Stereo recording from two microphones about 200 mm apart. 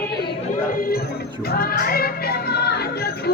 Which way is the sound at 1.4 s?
50° left (ahead or behind).